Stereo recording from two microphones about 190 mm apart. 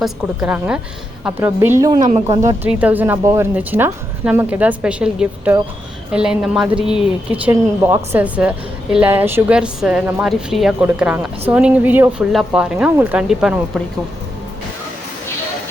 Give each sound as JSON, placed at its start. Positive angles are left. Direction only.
{"t": 0.0, "sound": "a woman's voice", "side_deg": -10}
{"t": 2.1, "sound": "a woman's voice", "side_deg": -30}
{"t": 2.6, "sound": "a woman's voice", "side_deg": -5}